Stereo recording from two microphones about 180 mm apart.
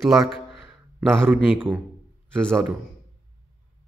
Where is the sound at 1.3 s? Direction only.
10° right (ahead or behind).